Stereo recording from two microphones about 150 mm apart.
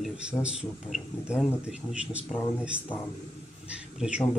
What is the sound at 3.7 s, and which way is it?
Speech, 5° right (ahead or behind).